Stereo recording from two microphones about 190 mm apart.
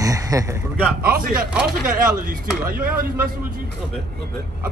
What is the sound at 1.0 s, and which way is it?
Speech, 50° right (ahead or behind).